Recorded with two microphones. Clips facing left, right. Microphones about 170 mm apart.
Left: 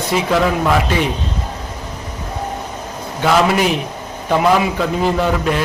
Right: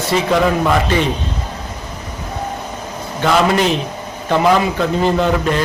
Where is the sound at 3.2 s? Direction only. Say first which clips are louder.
Even; 5° left (ahead or behind).